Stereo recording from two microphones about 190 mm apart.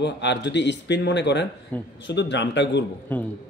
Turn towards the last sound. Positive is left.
turn(degrees=10)  # may be behind; listen again after turning